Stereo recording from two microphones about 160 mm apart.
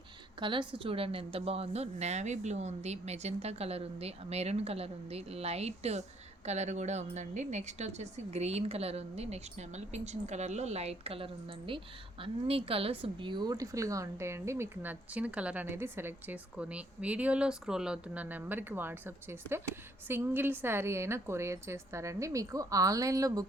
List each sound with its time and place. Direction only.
0.3 s a woman's voice: 30° right (ahead or behind)